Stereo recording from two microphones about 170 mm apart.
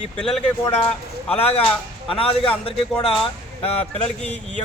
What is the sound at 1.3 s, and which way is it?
Speech, 35° left (ahead or behind).